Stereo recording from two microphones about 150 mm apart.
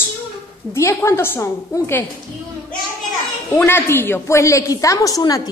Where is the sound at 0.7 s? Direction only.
15° left (ahead or behind).